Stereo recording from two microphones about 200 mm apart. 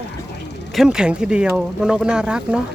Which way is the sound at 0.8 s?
5° right (ahead or behind).